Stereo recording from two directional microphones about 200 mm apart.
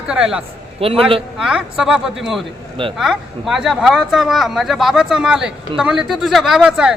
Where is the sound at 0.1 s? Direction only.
5° right (ahead or behind).